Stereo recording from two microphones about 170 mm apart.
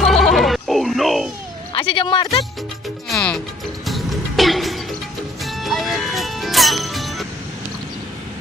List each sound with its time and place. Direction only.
0.0 s music: centre (ahead or behind)
1.8 s music: 30° left (ahead or behind)
3.1 s music: 5° left (ahead or behind)